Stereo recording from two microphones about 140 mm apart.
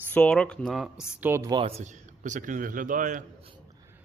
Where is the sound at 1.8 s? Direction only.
60° right (ahead or behind).